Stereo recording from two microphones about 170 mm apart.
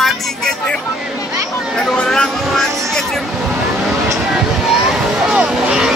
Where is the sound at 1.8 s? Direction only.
5° left (ahead or behind).